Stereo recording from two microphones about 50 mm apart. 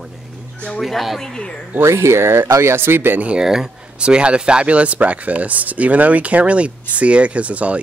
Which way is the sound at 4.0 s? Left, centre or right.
Right.